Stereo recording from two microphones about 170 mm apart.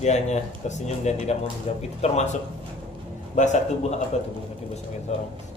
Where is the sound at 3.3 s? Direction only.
45° left (ahead or behind).